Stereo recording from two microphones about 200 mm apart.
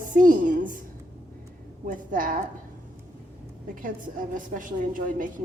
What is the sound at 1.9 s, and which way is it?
Speech, 40° right (ahead or behind).